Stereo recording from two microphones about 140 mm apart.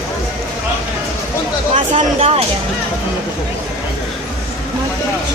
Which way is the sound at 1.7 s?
50° right (ahead or behind).